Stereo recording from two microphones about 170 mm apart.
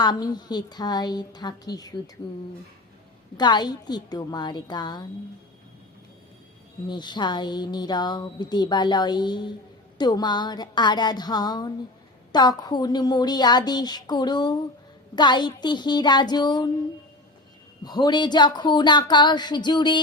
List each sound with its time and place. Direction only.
0.0 s speech: 25° left (ahead or behind)
3.3 s speech: 25° left (ahead or behind)
6.8 s speech: 25° left (ahead or behind)
17.8 s speech: 25° left (ahead or behind)